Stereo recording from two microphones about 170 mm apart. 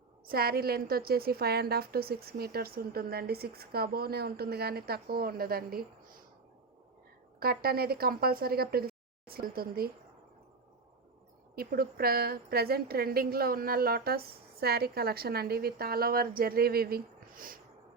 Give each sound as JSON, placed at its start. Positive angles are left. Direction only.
{"t": 0.3, "sound": "a woman's voice", "side_deg": -65}
{"t": 7.3, "sound": "speech", "side_deg": -65}
{"t": 11.5, "sound": "a woman's voice", "side_deg": -60}